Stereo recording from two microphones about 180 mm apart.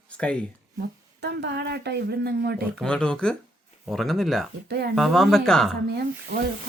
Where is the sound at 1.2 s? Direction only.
70° right (ahead or behind).